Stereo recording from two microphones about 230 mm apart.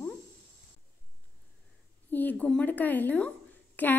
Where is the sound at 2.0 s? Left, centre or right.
Centre.